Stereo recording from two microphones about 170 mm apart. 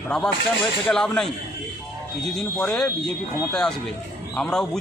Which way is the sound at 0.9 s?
5° left (ahead or behind).